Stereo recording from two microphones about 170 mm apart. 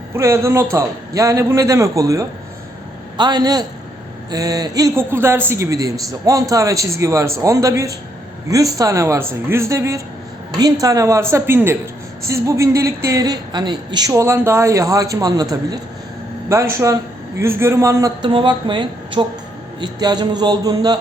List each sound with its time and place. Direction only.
0.1 s a man's voice: 15° right (ahead or behind)
18.2 s a woman's voice: 30° right (ahead or behind)